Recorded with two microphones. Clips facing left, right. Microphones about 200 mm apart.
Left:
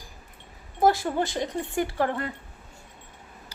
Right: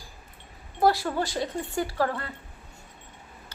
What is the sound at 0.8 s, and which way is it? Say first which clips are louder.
Speech: left 1 dB; 20° left (ahead or behind).